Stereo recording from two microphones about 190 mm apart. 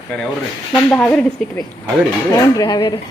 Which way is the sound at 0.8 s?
5° left (ahead or behind).